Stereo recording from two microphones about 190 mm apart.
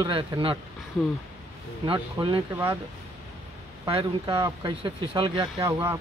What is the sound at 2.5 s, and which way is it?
Speech, 10° right (ahead or behind).